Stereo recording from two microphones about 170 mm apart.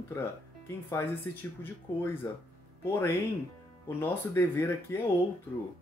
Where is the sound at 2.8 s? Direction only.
15° left (ahead or behind).